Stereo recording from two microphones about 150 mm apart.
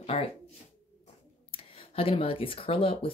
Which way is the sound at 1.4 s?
35° left (ahead or behind).